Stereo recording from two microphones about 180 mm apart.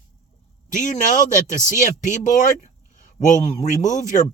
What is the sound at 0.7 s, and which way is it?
Speech, 45° left (ahead or behind).